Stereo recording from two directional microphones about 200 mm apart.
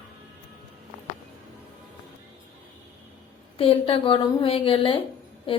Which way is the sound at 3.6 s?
30° left (ahead or behind).